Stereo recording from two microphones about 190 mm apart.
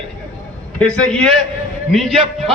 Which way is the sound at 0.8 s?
5° left (ahead or behind).